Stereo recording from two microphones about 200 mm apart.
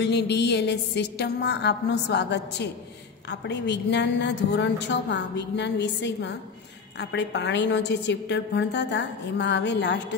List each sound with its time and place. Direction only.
0.0 s a woman's voice: 55° left (ahead or behind)